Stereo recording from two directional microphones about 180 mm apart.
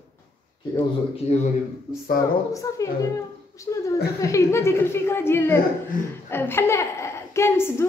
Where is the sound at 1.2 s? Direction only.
35° left (ahead or behind).